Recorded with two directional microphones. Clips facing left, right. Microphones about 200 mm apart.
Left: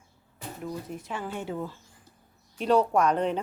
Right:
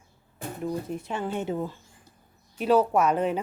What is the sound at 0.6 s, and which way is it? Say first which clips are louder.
Speech: right 5 dB; 25° right (ahead or behind).